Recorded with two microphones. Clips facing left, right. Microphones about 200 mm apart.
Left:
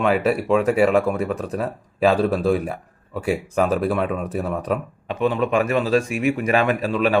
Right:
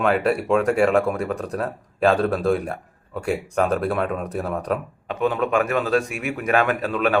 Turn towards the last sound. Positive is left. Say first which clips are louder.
# left 2 dB
turn(degrees=0)  # may be behind; listen again after turning